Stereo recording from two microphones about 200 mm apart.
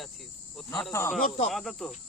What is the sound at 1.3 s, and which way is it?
Speech, 35° left (ahead or behind).